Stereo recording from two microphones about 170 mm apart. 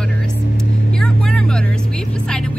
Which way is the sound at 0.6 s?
5° left (ahead or behind).